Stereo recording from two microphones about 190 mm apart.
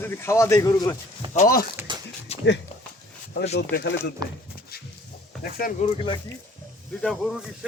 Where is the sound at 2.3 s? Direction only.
35° left (ahead or behind).